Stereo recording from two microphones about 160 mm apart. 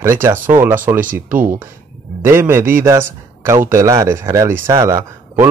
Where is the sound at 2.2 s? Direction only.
15° right (ahead or behind).